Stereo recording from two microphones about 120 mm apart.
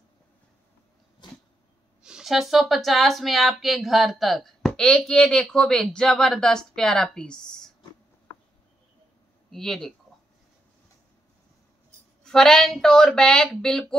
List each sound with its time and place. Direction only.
1.2 s a sound: 40° left (ahead or behind)
2.0 s speech: 5° right (ahead or behind)
9.5 s speech: 5° left (ahead or behind)
12.2 s speech: 5° left (ahead or behind)